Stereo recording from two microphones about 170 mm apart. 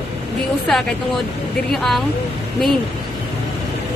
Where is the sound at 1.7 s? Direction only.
Centre (ahead or behind).